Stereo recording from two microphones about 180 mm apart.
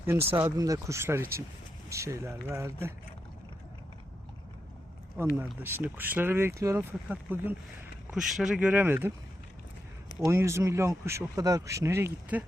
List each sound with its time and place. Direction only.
0.0 s speech: 15° right (ahead or behind)
5.1 s speech: 10° right (ahead or behind)
10.2 s speech: 15° right (ahead or behind)